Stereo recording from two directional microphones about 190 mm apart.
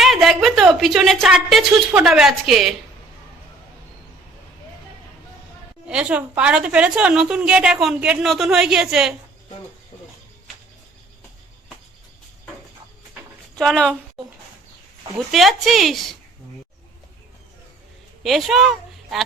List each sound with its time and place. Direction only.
0.0 s a woman's voice: centre (ahead or behind)
5.9 s a woman's voice: 5° right (ahead or behind)
13.6 s a woman's voice: centre (ahead or behind)
18.2 s a woman's voice: centre (ahead or behind)